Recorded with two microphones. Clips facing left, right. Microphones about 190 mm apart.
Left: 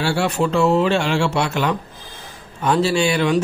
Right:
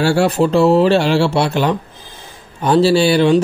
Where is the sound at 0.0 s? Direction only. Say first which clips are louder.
Right 6 dB; 40° right (ahead or behind).